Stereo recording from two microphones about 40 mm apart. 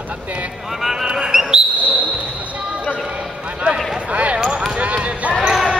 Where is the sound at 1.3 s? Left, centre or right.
Centre.